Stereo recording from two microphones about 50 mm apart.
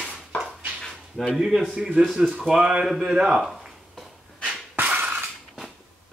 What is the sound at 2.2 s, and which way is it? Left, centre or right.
Speech, centre.